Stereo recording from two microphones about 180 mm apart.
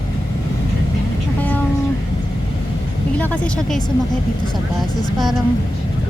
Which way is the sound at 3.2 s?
5° left (ahead or behind).